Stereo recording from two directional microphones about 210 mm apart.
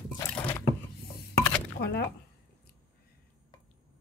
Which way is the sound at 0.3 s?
5° left (ahead or behind).